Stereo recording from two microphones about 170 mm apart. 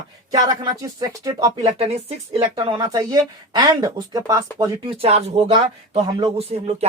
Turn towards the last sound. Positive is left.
turn(degrees=-35)  # may be behind; listen again after turning